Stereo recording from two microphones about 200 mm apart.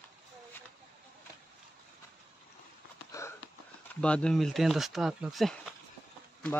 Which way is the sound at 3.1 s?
15° left (ahead or behind).